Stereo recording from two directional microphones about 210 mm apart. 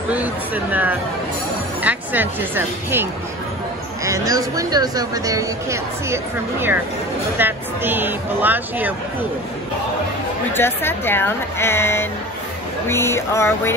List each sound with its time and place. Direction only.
0.1 s speech: 10° right (ahead or behind)
10.5 s speech: 10° left (ahead or behind)